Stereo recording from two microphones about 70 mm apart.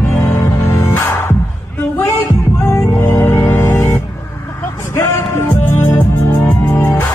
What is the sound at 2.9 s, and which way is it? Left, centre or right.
Music, left.